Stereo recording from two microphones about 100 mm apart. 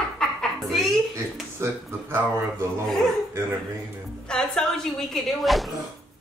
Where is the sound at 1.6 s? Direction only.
25° right (ahead or behind).